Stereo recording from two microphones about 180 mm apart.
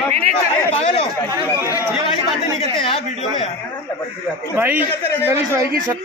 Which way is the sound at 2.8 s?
30° left (ahead or behind).